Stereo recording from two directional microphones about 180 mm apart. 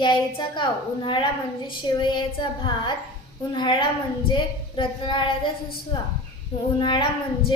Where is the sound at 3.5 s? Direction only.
25° left (ahead or behind).